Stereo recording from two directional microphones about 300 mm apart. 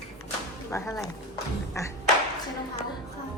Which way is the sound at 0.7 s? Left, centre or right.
Centre.